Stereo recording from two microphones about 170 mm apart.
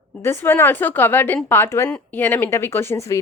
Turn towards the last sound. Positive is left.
turn(degrees=15)  # may be behind; listen again after turning